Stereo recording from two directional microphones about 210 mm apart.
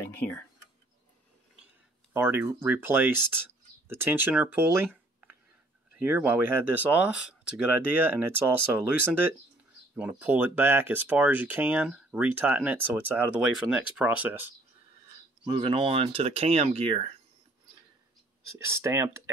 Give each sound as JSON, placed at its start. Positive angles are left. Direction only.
{"t": 0.0, "sound": "speech", "side_deg": 10}
{"t": 2.1, "sound": "speech", "side_deg": -10}
{"t": 15.4, "sound": "speech", "side_deg": -25}
{"t": 18.6, "sound": "speech", "side_deg": -15}